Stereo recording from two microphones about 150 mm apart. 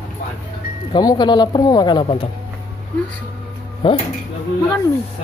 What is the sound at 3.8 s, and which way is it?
Speech, 35° left (ahead or behind).